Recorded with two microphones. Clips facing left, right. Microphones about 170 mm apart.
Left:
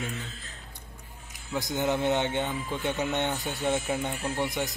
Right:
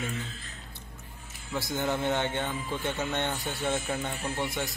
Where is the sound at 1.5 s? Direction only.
20° left (ahead or behind).